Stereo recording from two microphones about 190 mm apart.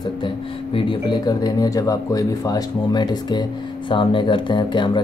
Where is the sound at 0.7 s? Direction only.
25° left (ahead or behind).